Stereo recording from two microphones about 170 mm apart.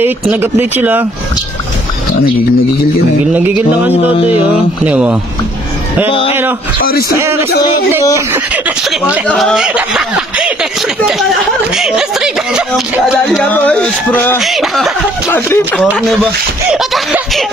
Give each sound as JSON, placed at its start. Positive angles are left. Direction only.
{"t": 0.0, "sound": "speech", "side_deg": -10}
{"t": 3.3, "sound": "speech", "side_deg": -10}
{"t": 3.9, "sound": "a sound", "side_deg": 35}
{"t": 4.8, "sound": "speech", "side_deg": -10}
{"t": 6.0, "sound": "a sound", "side_deg": 35}
{"t": 7.2, "sound": "speech", "side_deg": -15}
{"t": 9.3, "sound": "speech", "side_deg": 0}
{"t": 14.4, "sound": "speech", "side_deg": 0}
{"t": 15.3, "sound": "speech", "side_deg": 10}
{"t": 15.8, "sound": "speech", "side_deg": 0}